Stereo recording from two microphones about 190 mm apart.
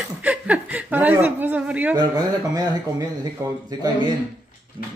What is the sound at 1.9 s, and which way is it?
Speech, 20° right (ahead or behind).